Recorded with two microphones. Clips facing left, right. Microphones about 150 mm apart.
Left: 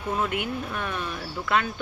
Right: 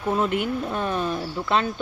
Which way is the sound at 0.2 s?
30° right (ahead or behind).